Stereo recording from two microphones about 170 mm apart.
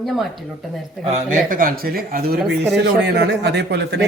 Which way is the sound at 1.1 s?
50° right (ahead or behind).